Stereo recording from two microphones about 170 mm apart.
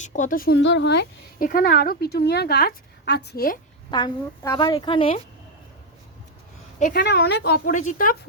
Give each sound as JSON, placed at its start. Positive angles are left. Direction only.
{"t": 0.0, "sound": "speech", "side_deg": 45}
{"t": 3.9, "sound": "a woman's voice", "side_deg": 25}
{"t": 6.9, "sound": "speech", "side_deg": 70}